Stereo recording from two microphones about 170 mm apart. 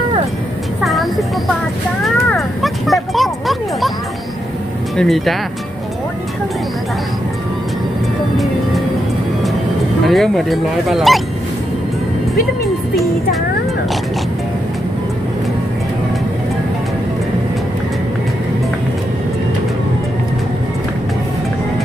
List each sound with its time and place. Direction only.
0.8 s a sound: centre (ahead or behind)
4.9 s speech: centre (ahead or behind)
10.0 s speech: centre (ahead or behind)